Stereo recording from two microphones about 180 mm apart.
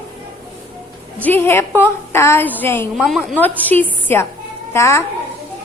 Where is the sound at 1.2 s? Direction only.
10° left (ahead or behind).